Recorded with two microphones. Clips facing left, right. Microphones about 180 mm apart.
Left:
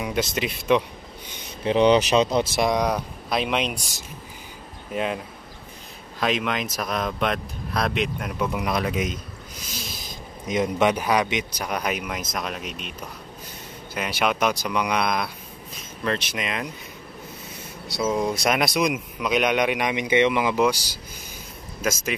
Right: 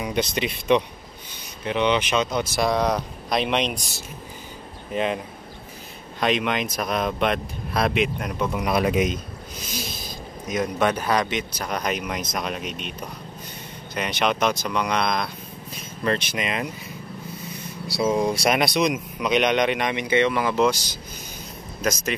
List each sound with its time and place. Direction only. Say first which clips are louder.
0.0 s speech: right 1 dB; centre (ahead or behind)
1.6 s speech: left 5 dB; 35° left (ahead or behind); by 3.9 s 5° left (ahead or behind)
4.9 s speech: right 2 dB; centre (ahead or behind)
8.7 s a man's voice: right 4 dB; 15° right (ahead or behind)
10.5 s speech: left 2 dB; 20° left (ahead or behind); by 12.9 s centre (ahead or behind)
13.9 s speech: right 1 dB; 5° left (ahead or behind)
18.0 s speech: right 2 dB; 5° right (ahead or behind)